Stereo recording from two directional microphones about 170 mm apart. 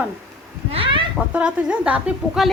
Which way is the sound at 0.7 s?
30° right (ahead or behind).